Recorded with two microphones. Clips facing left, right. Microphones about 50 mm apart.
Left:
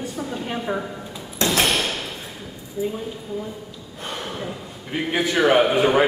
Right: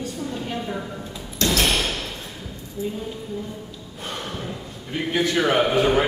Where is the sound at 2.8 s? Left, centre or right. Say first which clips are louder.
Left 3 dB; centre.